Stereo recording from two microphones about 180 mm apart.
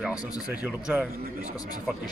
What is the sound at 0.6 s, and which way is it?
Speech, 5° right (ahead or behind).